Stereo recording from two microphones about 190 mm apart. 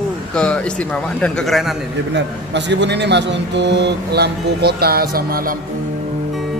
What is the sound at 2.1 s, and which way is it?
A man's voice, 70° right (ahead or behind).